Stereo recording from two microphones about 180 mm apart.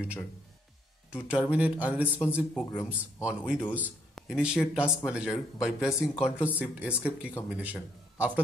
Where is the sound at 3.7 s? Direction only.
5° right (ahead or behind).